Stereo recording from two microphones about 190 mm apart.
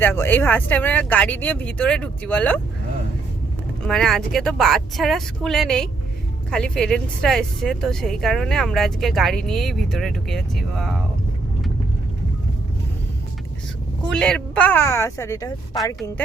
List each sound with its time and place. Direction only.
0.0 s speech: 10° left (ahead or behind)
3.8 s speech: 5° left (ahead or behind)
14.1 s speech: 5° left (ahead or behind)